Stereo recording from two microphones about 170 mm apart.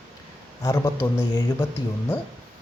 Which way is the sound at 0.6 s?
15° left (ahead or behind).